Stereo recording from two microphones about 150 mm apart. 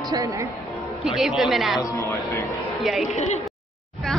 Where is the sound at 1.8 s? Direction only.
20° left (ahead or behind).